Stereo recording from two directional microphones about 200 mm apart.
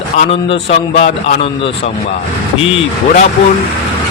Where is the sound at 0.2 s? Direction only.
30° left (ahead or behind).